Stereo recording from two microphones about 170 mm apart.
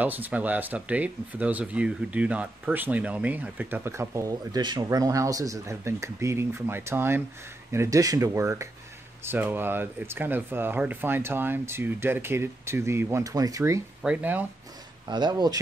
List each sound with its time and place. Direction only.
0.0 s speech: 10° right (ahead or behind)
15.0 s speech: 25° right (ahead or behind)